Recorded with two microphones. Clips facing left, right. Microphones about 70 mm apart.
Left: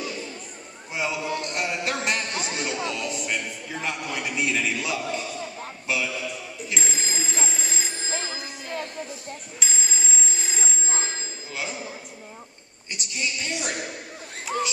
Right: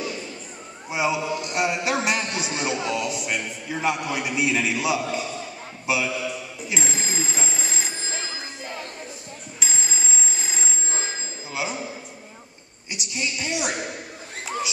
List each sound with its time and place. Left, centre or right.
0.9 s a man's voice: centre
6.7 s telephone bell ringing: centre
9.6 s telephone bell ringing: centre
11.5 s a sound: centre
12.9 s a man's voice: centre